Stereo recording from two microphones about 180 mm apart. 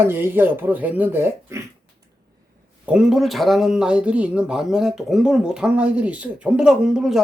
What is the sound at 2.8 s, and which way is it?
Speech, 5° right (ahead or behind).